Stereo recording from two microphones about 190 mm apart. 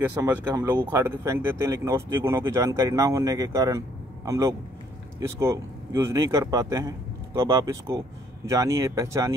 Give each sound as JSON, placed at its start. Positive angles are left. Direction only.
{"t": 0.1, "sound": "speech", "side_deg": -10}